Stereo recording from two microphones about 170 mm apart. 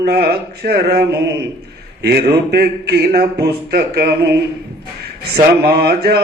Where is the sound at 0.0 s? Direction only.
70° right (ahead or behind).